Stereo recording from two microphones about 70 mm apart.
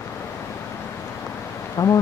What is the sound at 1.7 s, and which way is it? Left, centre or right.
Speech, left.